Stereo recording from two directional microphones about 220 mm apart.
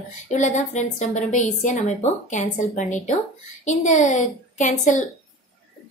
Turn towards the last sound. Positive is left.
turn(degrees=35)  # may be behind; listen again after turning